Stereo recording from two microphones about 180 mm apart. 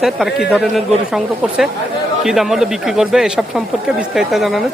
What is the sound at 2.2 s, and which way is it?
Speech, centre (ahead or behind).